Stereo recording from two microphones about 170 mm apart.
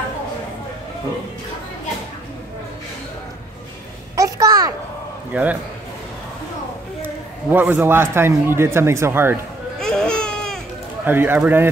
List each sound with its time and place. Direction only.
4.2 s a child's voice: 20° right (ahead or behind)
5.3 s speech: 10° right (ahead or behind)
7.0 s speech: 10° right (ahead or behind)
9.8 s a sound: 5° left (ahead or behind)
11.1 s speech: 10° right (ahead or behind)